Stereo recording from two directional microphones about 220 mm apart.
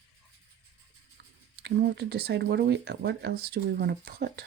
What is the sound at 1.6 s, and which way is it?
Speech, 50° right (ahead or behind).